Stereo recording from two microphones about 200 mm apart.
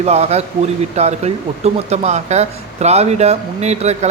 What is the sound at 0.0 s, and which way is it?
Speech, 30° right (ahead or behind).